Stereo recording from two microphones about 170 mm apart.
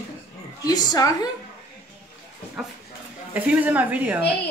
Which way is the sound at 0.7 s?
20° left (ahead or behind).